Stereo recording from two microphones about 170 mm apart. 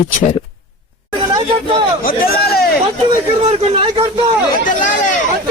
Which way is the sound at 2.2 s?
65° left (ahead or behind).